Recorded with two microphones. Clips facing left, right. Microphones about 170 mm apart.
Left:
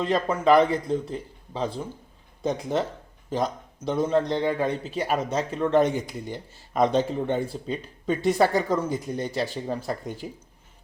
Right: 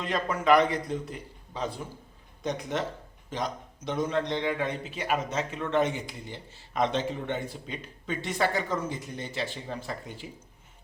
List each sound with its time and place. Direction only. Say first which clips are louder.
0.0 s a man's voice: left 5 dB; 30° left (ahead or behind)